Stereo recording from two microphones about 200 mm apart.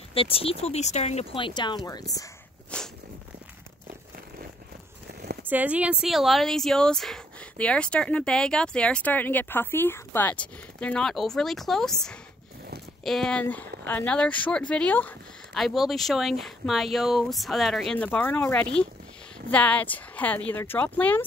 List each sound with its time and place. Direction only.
0.1 s speech: 30° left (ahead or behind)
2.7 s walk: 5° left (ahead or behind)
5.5 s speech: 10° right (ahead or behind); by 21.3 s 10° left (ahead or behind)